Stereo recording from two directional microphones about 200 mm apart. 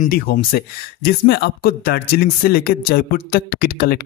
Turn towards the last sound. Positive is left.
turn(degrees=50)  # may be behind; listen again after turning